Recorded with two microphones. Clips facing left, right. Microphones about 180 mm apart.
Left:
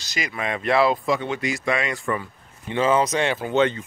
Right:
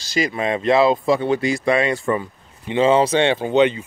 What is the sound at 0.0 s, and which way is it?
Speech, 30° right (ahead or behind).